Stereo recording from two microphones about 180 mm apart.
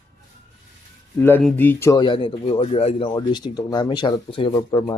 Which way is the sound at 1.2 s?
5° left (ahead or behind).